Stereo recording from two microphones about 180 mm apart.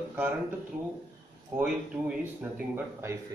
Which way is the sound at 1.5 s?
5° right (ahead or behind).